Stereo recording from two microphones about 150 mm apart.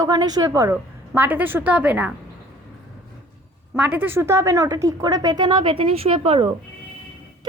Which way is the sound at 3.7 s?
10° right (ahead or behind).